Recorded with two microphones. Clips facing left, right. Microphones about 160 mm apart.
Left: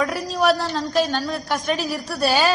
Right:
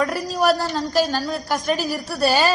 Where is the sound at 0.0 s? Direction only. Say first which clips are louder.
Even; centre (ahead or behind).